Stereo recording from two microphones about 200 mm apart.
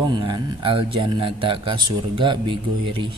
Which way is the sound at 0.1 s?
20° right (ahead or behind).